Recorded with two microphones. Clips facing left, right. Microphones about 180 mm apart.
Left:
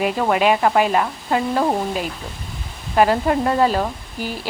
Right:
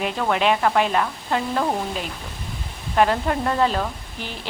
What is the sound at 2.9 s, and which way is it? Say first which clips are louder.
Speech: left 3 dB; 10° left (ahead or behind).